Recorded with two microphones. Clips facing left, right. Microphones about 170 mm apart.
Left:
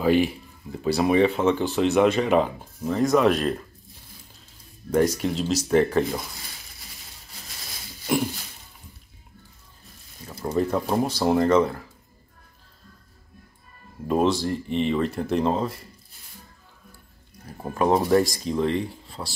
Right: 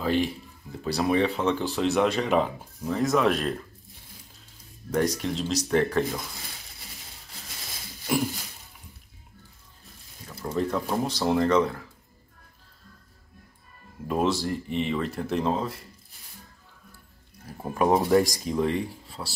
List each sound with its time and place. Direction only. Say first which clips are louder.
0.0 s speech: left 5 dB; 5° left (ahead or behind)
4.9 s speech: left 4 dB; centre (ahead or behind)
10.4 s speech: left 4 dB; 15° left (ahead or behind)
11.1 s speech: left 2 dB; centre (ahead or behind)
14.0 s speech: left 4 dB; centre (ahead or behind)
17.8 s speech: left 1 dB; 15° right (ahead or behind)